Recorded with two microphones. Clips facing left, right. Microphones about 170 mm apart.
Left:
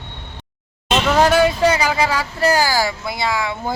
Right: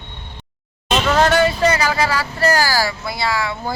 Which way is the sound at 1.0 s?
10° left (ahead or behind).